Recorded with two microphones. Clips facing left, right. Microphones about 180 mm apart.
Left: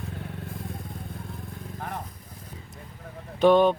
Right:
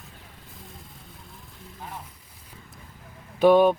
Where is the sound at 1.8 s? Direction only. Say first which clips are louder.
Left 4 dB; 55° left (ahead or behind).